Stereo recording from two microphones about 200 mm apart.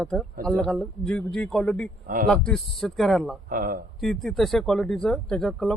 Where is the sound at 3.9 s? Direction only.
Centre (ahead or behind).